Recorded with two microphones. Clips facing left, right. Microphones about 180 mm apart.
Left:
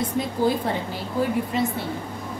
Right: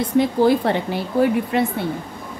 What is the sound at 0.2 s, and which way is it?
A woman's voice, 75° right (ahead or behind).